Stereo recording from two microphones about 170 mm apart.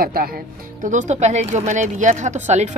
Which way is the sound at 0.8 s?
45° right (ahead or behind).